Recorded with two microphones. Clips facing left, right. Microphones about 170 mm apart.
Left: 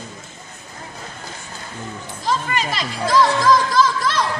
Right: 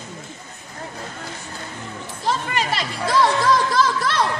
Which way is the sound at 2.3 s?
60° right (ahead or behind).